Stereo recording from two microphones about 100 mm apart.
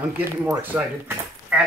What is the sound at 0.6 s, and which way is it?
Speech, 15° right (ahead or behind).